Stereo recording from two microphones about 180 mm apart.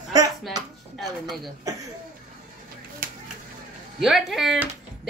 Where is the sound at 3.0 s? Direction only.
50° right (ahead or behind).